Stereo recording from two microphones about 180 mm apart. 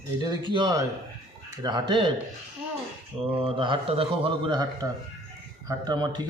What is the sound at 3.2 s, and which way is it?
A man's voice, 30° right (ahead or behind).